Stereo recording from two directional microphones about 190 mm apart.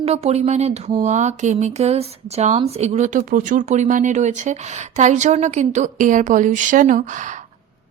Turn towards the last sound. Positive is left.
turn(degrees=-40)  # may be behind; listen again after turning